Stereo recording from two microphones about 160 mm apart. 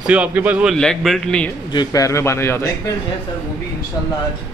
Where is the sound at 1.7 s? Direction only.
25° left (ahead or behind).